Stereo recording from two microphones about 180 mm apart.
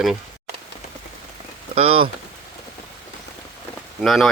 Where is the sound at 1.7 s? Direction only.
30° right (ahead or behind).